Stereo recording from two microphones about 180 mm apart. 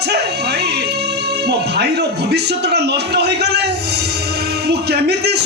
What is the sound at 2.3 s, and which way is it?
Speech, 65° right (ahead or behind).